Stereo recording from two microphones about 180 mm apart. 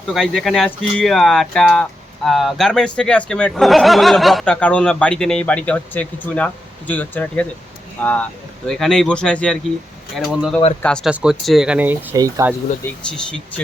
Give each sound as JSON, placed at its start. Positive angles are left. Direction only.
{"t": 0.1, "sound": "speech", "side_deg": 0}